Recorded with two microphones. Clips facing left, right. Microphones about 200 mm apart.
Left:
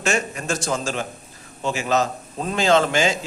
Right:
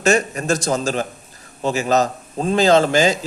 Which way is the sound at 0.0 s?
40° right (ahead or behind).